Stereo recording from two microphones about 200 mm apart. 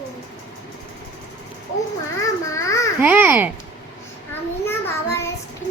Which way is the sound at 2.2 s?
15° left (ahead or behind).